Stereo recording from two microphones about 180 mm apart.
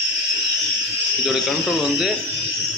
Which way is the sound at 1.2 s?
Centre (ahead or behind).